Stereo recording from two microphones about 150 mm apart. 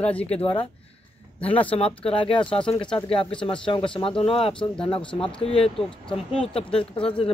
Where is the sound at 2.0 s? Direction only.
35° left (ahead or behind).